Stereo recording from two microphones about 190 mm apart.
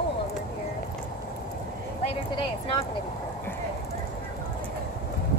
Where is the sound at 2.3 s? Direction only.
25° left (ahead or behind).